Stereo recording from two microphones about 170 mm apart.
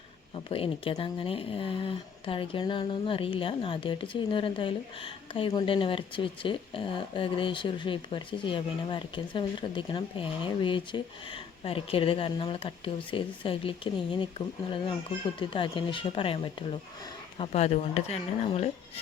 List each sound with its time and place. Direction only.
0.3 s speech: 35° left (ahead or behind)